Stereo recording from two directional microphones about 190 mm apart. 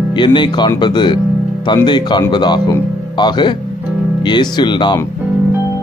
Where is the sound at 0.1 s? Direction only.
25° left (ahead or behind).